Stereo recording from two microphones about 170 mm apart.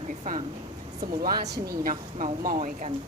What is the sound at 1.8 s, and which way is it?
Speech, 50° right (ahead or behind).